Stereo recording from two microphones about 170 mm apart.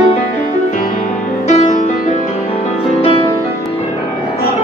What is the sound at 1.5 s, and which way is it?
Music, 40° left (ahead or behind).